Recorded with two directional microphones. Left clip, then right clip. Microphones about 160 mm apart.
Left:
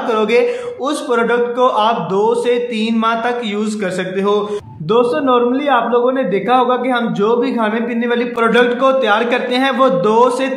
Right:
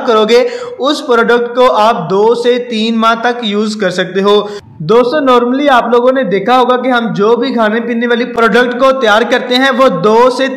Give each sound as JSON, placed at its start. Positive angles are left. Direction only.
{"t": 0.1, "sound": "a man's voice", "side_deg": -45}